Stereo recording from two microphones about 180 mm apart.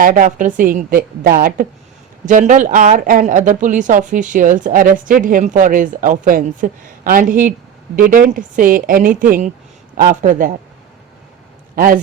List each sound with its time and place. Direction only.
0.0 s speech: 45° right (ahead or behind)